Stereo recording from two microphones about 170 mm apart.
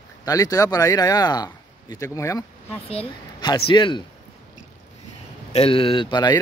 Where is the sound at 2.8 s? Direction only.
35° left (ahead or behind).